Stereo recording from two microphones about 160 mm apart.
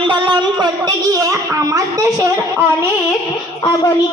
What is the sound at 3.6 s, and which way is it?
Speech, 20° left (ahead or behind).